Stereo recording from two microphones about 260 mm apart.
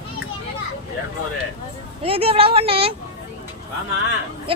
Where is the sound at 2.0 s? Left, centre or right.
Right.